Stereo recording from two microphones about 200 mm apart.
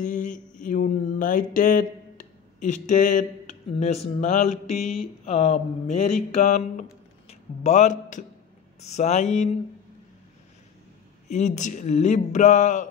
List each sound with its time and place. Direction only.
0.0 s mantra: 40° left (ahead or behind)
8.8 s speech: 35° left (ahead or behind)
11.3 s speech: 35° left (ahead or behind)